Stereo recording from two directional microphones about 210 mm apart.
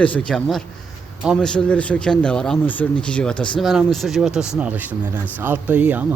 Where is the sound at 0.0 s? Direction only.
5° left (ahead or behind).